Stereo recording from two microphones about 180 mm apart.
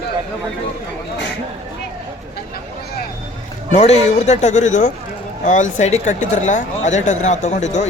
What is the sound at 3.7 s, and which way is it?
Speech, 35° left (ahead or behind).